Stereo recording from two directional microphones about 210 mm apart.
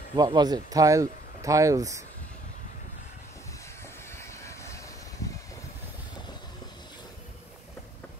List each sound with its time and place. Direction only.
0.1 s speech: 20° right (ahead or behind)
4.1 s vehicle: 15° left (ahead or behind)